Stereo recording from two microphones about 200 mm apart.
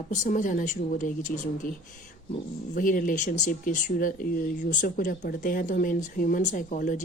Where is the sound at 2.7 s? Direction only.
45° left (ahead or behind).